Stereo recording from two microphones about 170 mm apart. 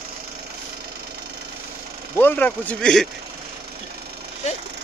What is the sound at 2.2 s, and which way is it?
Speech, 10° left (ahead or behind).